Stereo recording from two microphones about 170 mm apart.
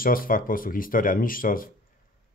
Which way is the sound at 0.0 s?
55° left (ahead or behind).